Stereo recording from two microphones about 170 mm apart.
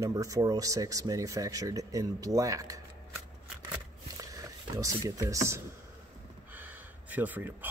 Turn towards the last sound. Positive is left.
turn(degrees=-10)  # may be behind; listen again after turning